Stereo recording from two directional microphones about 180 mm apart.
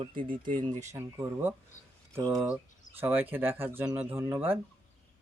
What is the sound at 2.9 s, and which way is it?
Speech, 10° right (ahead or behind).